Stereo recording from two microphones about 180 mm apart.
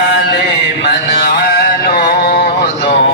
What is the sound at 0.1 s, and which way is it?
Mantra, 75° left (ahead or behind).